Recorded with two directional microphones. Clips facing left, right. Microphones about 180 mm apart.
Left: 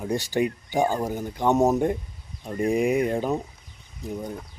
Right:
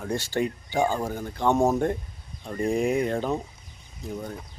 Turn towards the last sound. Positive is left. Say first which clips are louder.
# left 2 dB
turn(degrees=15)  # may be behind; listen again after turning